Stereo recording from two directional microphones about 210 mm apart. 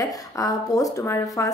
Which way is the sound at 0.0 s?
15° left (ahead or behind).